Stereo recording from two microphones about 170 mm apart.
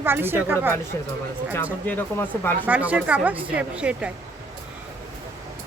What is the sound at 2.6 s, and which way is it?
Speech, 10° right (ahead or behind).